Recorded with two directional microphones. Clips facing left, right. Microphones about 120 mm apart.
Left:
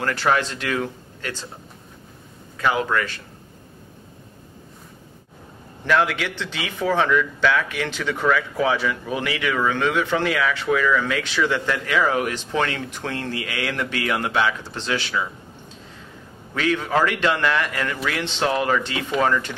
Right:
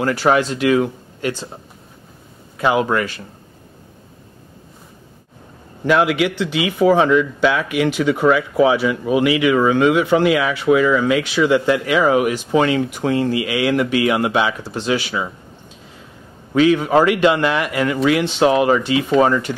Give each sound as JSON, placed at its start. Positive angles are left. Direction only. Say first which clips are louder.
{"t": 0.0, "sound": "speech", "louder": "right 5 dB", "side_deg": -15}
{"t": 2.5, "sound": "speech", "louder": "right 5 dB", "side_deg": -20}
{"t": 5.9, "sound": "speech", "louder": "right 5 dB", "side_deg": -15}
{"t": 16.5, "sound": "speech", "louder": "right 8 dB", "side_deg": -15}